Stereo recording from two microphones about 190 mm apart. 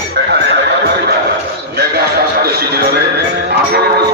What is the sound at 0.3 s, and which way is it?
Neigh, 65° right (ahead or behind).